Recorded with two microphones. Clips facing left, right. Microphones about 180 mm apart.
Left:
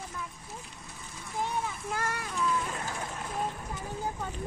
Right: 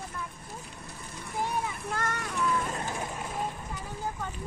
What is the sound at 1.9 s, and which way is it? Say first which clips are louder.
Child singing: right 1 dB; 10° left (ahead or behind).